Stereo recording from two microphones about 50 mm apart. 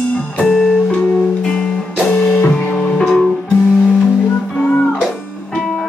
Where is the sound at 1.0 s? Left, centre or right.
Left.